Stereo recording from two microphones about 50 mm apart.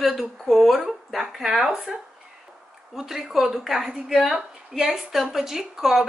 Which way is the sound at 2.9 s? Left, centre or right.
Centre.